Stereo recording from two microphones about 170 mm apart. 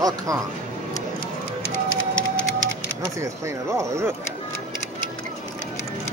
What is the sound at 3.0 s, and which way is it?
Speech, 15° right (ahead or behind).